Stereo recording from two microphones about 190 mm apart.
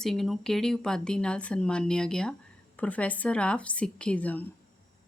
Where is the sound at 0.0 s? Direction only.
Centre (ahead or behind).